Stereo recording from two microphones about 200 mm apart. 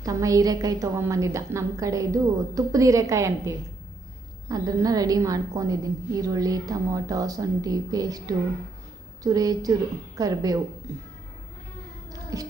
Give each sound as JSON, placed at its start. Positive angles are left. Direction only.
{"t": 0.0, "sound": "a woman's voice", "side_deg": -15}
{"t": 12.3, "sound": "a woman's voice", "side_deg": -15}